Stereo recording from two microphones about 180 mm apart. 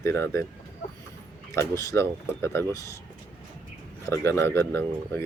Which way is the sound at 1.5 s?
15° left (ahead or behind).